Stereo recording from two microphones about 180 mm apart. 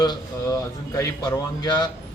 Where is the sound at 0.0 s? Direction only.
25° left (ahead or behind).